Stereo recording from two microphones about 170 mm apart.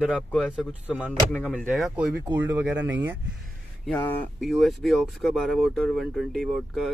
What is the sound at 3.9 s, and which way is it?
Speech, 5° left (ahead or behind).